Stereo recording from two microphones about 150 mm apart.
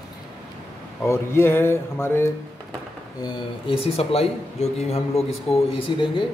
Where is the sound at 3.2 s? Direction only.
30° left (ahead or behind).